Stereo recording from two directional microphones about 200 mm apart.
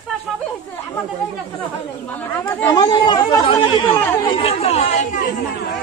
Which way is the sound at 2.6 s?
20° left (ahead or behind).